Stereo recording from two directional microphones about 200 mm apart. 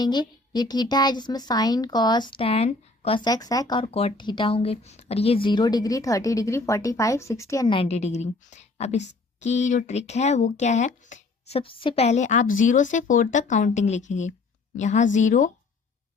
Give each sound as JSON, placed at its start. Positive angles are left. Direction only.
{"t": 0.0, "sound": "a woman's voice", "side_deg": 20}
{"t": 3.2, "sound": "speech", "side_deg": 20}